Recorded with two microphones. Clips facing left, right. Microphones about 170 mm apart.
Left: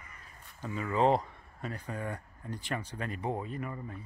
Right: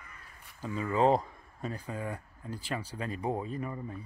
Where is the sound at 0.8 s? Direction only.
5° right (ahead or behind).